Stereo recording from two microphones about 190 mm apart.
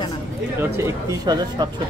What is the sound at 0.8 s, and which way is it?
Speech, 20° right (ahead or behind).